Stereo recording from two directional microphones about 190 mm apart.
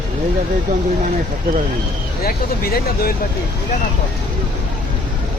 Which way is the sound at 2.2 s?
55° left (ahead or behind).